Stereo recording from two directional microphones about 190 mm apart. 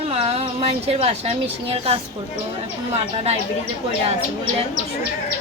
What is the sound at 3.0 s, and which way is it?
Speech, 35° right (ahead or behind).